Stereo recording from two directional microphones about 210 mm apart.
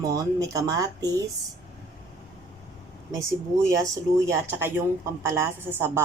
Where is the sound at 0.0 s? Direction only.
15° right (ahead or behind).